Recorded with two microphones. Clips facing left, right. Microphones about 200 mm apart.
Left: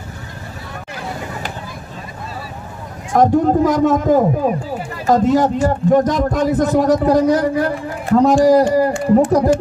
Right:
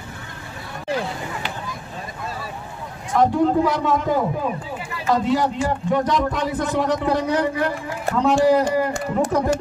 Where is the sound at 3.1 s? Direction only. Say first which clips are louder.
Left 4 dB; 45° left (ahead or behind).